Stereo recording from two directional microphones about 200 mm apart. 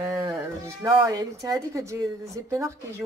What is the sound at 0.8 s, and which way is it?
Speech, 15° right (ahead or behind).